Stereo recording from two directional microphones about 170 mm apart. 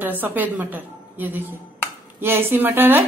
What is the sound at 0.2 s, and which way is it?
A woman's voice, 10° right (ahead or behind).